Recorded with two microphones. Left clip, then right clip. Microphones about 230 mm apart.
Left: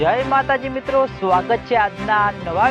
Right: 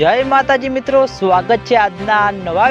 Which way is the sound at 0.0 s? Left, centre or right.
Right.